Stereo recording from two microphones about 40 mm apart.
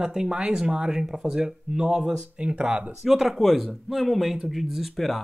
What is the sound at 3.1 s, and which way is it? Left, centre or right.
Speech, centre.